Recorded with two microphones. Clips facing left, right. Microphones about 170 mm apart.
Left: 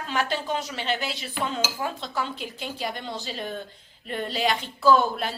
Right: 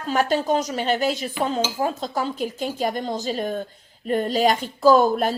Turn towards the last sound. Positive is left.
turn(degrees=-45)  # may be behind; listen again after turning